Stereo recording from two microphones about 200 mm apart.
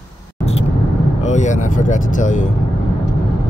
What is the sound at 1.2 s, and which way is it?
Speech, 35° left (ahead or behind).